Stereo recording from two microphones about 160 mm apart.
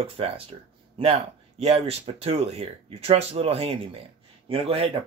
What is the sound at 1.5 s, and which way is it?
Speech, 40° right (ahead or behind).